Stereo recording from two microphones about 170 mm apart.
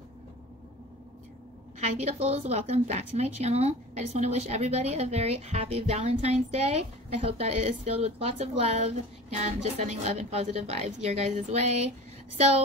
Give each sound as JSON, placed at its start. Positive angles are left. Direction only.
{"t": 1.8, "sound": "a woman's voice", "side_deg": -40}